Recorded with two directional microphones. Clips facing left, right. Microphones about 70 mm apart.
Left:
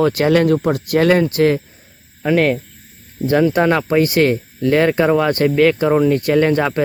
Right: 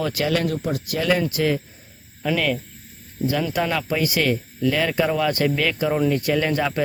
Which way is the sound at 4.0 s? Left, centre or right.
Left.